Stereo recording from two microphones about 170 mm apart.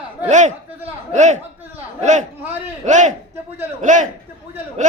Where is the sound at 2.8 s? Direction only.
45° right (ahead or behind).